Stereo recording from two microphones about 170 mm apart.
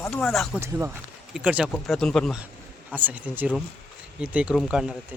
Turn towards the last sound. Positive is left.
turn(degrees=-5)  # may be behind; listen again after turning